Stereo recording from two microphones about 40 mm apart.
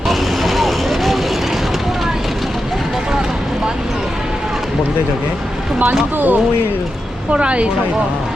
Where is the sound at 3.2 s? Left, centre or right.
Centre.